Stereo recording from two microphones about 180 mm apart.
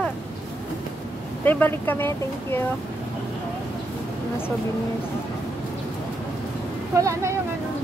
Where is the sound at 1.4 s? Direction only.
10° left (ahead or behind).